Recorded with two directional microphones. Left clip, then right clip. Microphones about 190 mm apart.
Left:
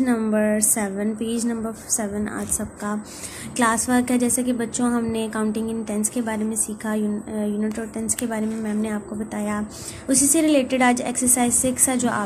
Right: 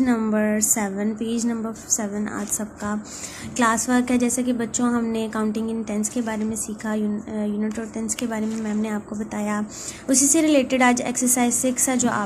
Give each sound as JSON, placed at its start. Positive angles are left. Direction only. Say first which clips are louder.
{"t": 0.0, "sound": "a woman's voice", "louder": "left 1 dB", "side_deg": 0}